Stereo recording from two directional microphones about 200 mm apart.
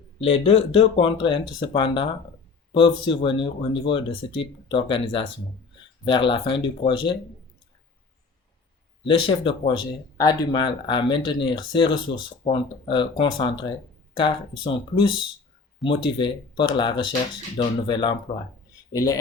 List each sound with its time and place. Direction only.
0.2 s speech: 30° left (ahead or behind)
9.0 s speech: 25° left (ahead or behind)